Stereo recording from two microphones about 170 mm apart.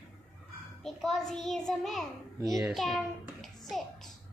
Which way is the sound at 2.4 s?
20° right (ahead or behind).